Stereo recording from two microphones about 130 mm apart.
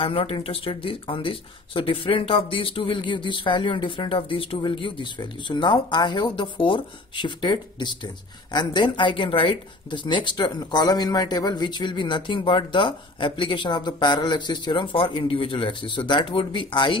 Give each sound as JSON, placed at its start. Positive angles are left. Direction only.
{"t": 0.0, "sound": "speech", "side_deg": 45}